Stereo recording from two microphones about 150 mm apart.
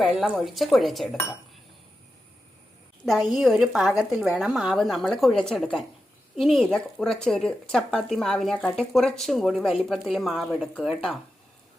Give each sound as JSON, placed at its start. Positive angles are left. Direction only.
{"t": 0.0, "sound": "speech", "side_deg": 0}
{"t": 3.3, "sound": "speech", "side_deg": 0}